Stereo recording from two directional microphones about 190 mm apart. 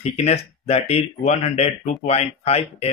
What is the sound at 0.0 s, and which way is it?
Speech, 35° left (ahead or behind).